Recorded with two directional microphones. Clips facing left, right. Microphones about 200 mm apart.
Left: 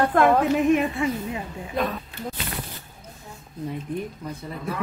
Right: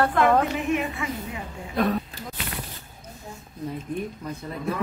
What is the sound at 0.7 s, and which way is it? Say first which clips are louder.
Speech: left 5 dB; 35° left (ahead or behind).